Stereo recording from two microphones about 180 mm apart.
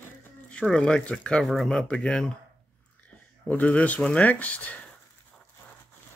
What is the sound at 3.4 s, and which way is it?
Speech, 10° left (ahead or behind).